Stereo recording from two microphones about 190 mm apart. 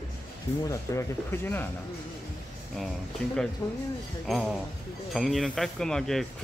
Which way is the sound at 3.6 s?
15° left (ahead or behind).